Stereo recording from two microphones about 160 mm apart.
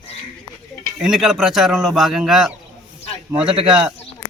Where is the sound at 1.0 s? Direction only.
5° right (ahead or behind).